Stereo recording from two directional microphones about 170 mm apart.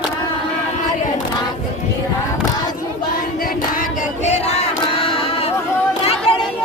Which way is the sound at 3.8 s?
40° left (ahead or behind).